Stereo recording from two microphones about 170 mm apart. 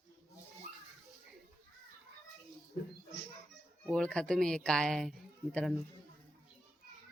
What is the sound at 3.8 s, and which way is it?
Speech, 5° left (ahead or behind).